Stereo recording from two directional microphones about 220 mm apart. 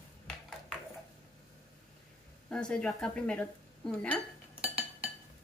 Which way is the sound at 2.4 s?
5° left (ahead or behind).